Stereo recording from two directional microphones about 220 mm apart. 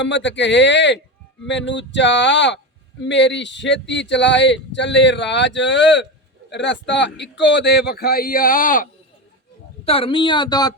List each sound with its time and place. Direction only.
0.0 s speech: 55° left (ahead or behind); by 8.9 s 40° left (ahead or behind)
9.8 s speech: 25° left (ahead or behind)